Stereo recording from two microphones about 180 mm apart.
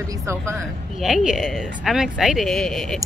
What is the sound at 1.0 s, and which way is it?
Speech, centre (ahead or behind).